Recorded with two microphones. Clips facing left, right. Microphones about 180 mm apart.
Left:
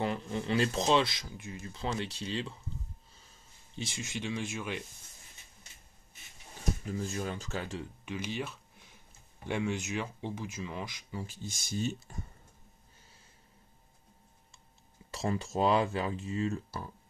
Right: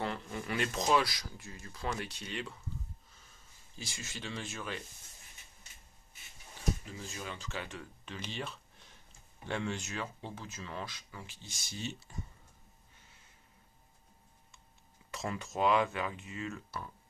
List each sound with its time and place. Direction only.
0.0 s speech: 20° left (ahead or behind)
3.7 s speech: 25° left (ahead or behind)
6.9 s speech: 45° left (ahead or behind)
8.0 s speech: 10° left (ahead or behind)
11.1 s speech: 45° left (ahead or behind)
15.0 s speech: 30° left (ahead or behind)